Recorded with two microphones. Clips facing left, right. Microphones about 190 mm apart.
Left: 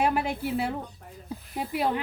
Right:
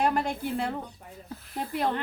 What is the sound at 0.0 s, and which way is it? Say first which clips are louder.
Speech: left 1 dB; 5° left (ahead or behind).